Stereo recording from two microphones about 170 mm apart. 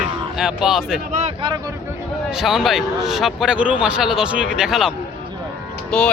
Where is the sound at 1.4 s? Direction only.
25° right (ahead or behind).